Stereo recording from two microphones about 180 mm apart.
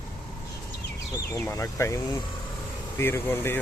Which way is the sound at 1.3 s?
15° left (ahead or behind).